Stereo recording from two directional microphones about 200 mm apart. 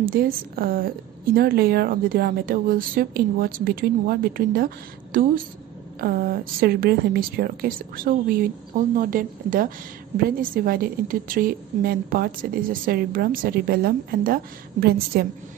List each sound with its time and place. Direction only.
0.0 s a woman's voice: 45° right (ahead or behind)